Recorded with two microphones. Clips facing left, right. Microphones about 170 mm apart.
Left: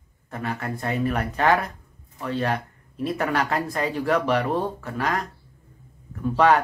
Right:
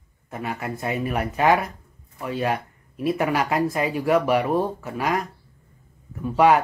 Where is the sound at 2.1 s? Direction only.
10° right (ahead or behind).